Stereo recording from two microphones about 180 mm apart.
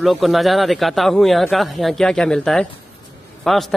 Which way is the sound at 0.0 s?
Centre (ahead or behind).